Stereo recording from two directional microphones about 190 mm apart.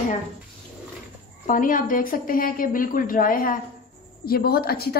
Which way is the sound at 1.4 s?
45° left (ahead or behind).